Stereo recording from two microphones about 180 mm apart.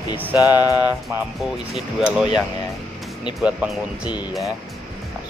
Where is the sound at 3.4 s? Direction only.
5° right (ahead or behind).